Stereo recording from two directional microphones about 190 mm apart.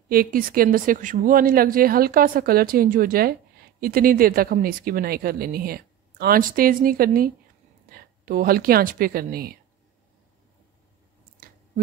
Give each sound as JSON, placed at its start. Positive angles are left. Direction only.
{"t": 0.1, "sound": "a woman's voice", "side_deg": -50}
{"t": 11.3, "sound": "squish", "side_deg": -50}